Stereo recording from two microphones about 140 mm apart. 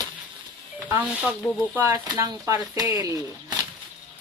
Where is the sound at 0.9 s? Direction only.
10° right (ahead or behind).